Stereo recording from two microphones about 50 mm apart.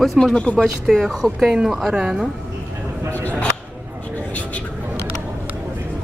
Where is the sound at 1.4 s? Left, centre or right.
Centre.